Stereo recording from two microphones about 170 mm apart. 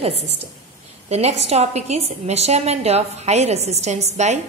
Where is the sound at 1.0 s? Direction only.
40° right (ahead or behind).